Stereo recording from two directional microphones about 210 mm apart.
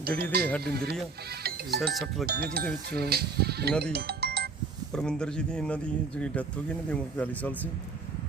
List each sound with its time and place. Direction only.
0.2 s speech: 50° right (ahead or behind)
1.5 s music: 50° right (ahead or behind)
2.2 s speech: 45° right (ahead or behind)
3.9 s music: 50° right (ahead or behind)
4.9 s speech: 5° left (ahead or behind)